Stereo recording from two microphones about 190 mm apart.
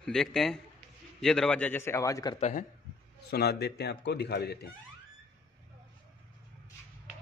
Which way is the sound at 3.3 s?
55° left (ahead or behind).